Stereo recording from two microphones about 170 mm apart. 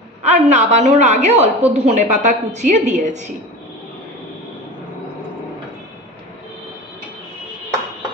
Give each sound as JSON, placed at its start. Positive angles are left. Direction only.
{"t": 0.2, "sound": "a woman's voice", "side_deg": -40}